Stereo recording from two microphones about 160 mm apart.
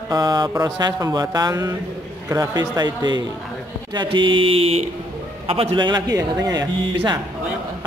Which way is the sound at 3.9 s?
30° right (ahead or behind).